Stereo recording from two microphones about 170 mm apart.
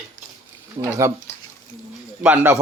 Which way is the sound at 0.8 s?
25° right (ahead or behind).